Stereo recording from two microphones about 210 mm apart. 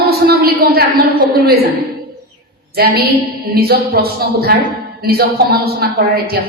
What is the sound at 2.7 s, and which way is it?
A woman's voice, 45° right (ahead or behind).